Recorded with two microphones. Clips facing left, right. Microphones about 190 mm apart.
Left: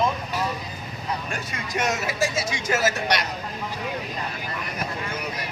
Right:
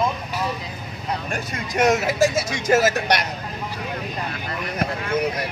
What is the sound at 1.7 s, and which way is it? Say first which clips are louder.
Speech: right 7 dB; 40° right (ahead or behind).